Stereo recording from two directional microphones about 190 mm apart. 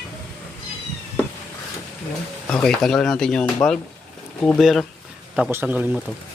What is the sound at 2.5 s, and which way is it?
Speech, 5° left (ahead or behind).